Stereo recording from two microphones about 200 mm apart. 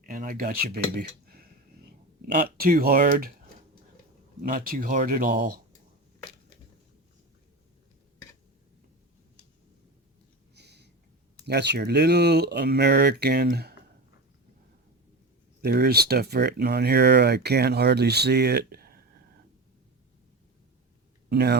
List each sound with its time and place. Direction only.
0.0 s speech: 40° right (ahead or behind)
4.4 s speech: 45° right (ahead or behind)
10.5 s a sound: 55° right (ahead or behind)
11.4 s speech: 55° right (ahead or behind)
15.6 s speech: 55° right (ahead or behind)
21.2 s speech: 55° right (ahead or behind)